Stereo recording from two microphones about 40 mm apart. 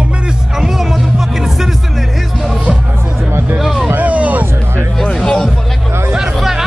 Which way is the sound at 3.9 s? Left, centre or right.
Right.